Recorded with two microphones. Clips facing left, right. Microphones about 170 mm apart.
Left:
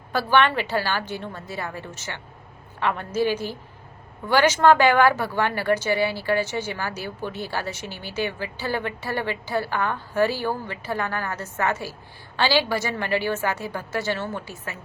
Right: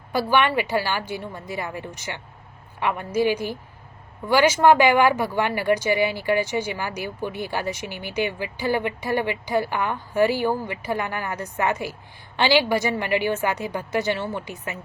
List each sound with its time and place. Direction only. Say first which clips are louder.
0.1 s speech: even; 10° right (ahead or behind)